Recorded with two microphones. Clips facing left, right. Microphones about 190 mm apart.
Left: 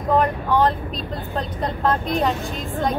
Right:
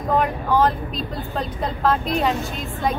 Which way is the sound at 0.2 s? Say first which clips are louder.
Even; centre (ahead or behind).